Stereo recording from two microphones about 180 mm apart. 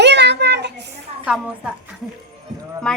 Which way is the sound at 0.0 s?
70° right (ahead or behind).